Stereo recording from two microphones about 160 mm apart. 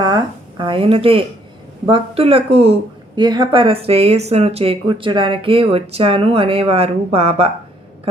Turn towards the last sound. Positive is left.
turn(degrees=-40)  # may be behind; listen again after turning